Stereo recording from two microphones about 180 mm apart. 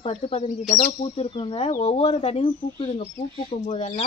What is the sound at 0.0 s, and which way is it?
A woman's voice, 35° left (ahead or behind).